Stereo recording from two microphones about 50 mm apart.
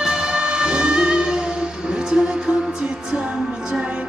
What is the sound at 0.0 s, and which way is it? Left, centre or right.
Music, centre.